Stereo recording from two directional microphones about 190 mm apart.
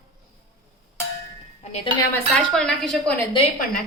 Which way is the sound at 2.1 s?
5° left (ahead or behind).